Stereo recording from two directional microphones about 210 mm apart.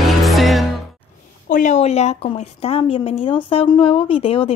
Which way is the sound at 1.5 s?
35° left (ahead or behind).